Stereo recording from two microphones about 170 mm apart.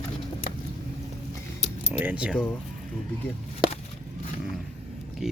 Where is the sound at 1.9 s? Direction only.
10° right (ahead or behind).